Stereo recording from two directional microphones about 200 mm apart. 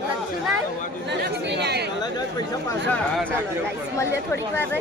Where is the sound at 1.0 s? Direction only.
55° right (ahead or behind).